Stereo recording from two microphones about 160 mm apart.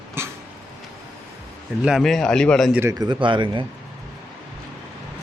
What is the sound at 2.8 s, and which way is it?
Speech, 25° right (ahead or behind).